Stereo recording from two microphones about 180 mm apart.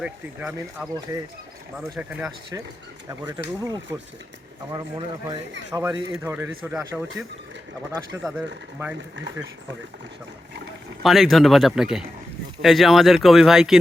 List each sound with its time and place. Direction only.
0.0 s speech: 5° right (ahead or behind)
2.0 s speech: 5° right (ahead or behind)
4.7 s speech: 25° right (ahead or behind)
6.2 s speech: 10° right (ahead or behind)
11.0 s speech: centre (ahead or behind)